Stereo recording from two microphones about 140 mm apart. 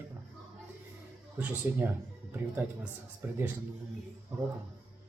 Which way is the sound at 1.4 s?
15° right (ahead or behind).